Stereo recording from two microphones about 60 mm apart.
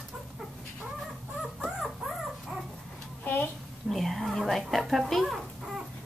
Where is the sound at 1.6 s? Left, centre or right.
Centre.